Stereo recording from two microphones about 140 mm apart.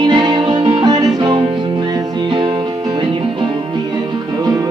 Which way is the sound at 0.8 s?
30° right (ahead or behind).